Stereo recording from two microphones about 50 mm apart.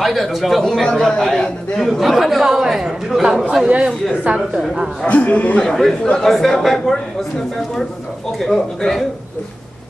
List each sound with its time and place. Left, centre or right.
0.0 s a man's voice: centre
3.6 s speech: right
5.0 s a man's voice: left
5.6 s a man's voice: centre
8.4 s speech: centre